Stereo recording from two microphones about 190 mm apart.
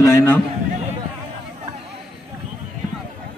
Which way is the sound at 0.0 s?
15° left (ahead or behind).